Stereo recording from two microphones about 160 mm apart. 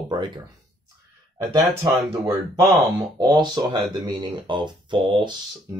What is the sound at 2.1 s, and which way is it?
Speech, 20° right (ahead or behind).